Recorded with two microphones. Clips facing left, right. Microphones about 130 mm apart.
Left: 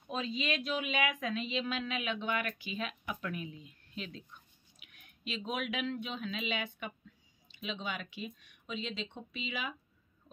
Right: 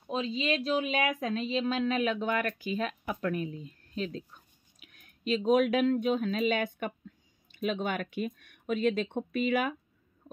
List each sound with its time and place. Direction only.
0.0 s speech: 30° right (ahead or behind); by 9.8 s 55° right (ahead or behind)